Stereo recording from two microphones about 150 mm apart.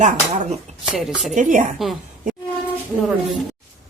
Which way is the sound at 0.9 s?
Centre (ahead or behind).